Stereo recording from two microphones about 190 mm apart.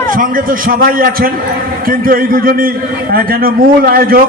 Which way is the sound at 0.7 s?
50° right (ahead or behind).